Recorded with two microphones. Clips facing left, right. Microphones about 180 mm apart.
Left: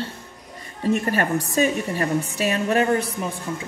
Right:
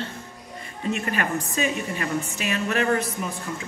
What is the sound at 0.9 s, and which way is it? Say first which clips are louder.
A woman's voice: left 5 dB; 35° left (ahead or behind).